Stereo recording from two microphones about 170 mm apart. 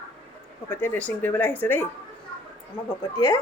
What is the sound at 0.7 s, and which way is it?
Speech, 10° left (ahead or behind).